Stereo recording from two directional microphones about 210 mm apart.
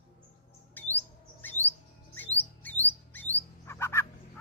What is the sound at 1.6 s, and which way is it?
Chirp, 35° left (ahead or behind).